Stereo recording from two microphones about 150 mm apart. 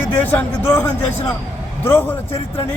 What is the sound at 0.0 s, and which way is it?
Speech, 10° left (ahead or behind).